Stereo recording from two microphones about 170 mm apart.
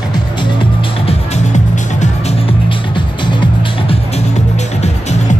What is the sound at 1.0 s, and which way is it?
Music, 45° left (ahead or behind).